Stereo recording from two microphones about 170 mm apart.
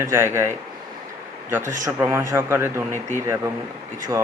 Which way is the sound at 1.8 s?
15° right (ahead or behind).